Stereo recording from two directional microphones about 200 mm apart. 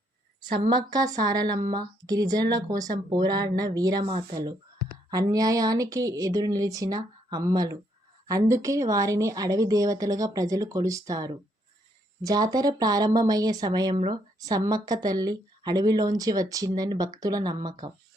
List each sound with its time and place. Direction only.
0.4 s a woman's voice: 40° right (ahead or behind)
0.7 s speech: 20° right (ahead or behind)
5.1 s speech: 20° right (ahead or behind)